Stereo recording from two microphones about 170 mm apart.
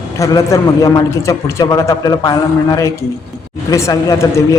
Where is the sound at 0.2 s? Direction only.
20° left (ahead or behind).